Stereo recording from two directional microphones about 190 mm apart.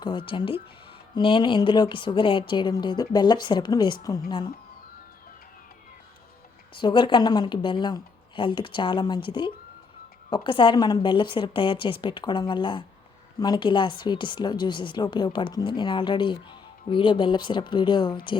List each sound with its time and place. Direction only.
0.0 s a woman's voice: 25° left (ahead or behind)
6.7 s a woman's voice: 25° left (ahead or behind)